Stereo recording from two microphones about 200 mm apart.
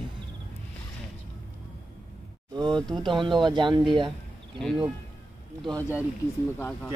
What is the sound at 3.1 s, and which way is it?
Speech, 25° right (ahead or behind).